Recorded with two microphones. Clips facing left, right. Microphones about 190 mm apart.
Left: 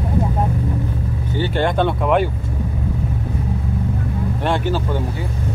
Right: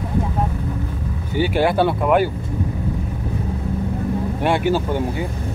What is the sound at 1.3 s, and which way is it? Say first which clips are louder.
Speech: right 2 dB; 10° right (ahead or behind).